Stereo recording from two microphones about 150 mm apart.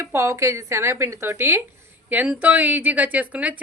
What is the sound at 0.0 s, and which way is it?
A woman's voice, 15° right (ahead or behind).